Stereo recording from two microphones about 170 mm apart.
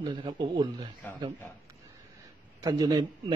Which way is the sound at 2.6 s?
20° right (ahead or behind).